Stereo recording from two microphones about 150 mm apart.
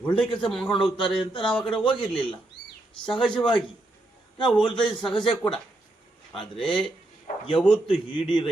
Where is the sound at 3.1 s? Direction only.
35° left (ahead or behind).